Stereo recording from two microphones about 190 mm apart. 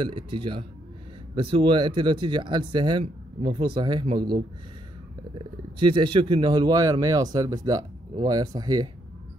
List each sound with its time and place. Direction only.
0.0 s speech: 25° right (ahead or behind)
5.8 s speech: 25° right (ahead or behind)